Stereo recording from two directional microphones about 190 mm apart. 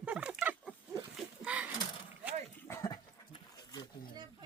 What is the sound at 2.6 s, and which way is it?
Dog, 15° left (ahead or behind).